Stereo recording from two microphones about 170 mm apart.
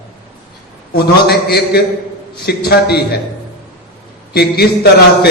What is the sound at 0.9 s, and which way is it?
A man's voice, 65° left (ahead or behind).